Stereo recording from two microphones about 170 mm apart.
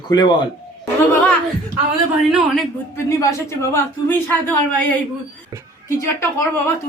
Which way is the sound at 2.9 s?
15° left (ahead or behind).